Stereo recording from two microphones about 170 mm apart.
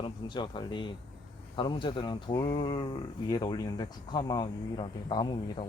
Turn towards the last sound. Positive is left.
turn(degrees=30)  # may be behind; listen again after turning